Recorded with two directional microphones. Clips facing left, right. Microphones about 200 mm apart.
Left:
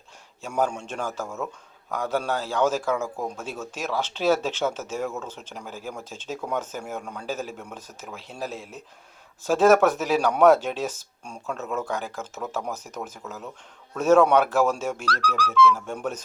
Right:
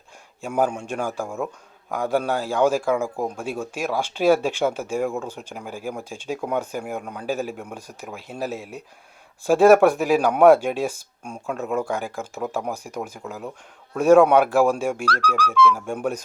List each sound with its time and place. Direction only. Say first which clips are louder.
0.4 s a man's voice: right 3 dB; 10° right (ahead or behind)
15.0 s speech: right 3 dB; 55° right (ahead or behind)
15.7 s a man's voice: right 4 dB; 10° right (ahead or behind)